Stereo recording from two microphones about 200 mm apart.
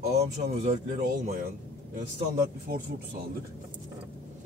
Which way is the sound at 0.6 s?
40° right (ahead or behind).